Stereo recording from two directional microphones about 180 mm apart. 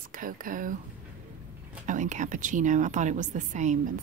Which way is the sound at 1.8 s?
45° right (ahead or behind).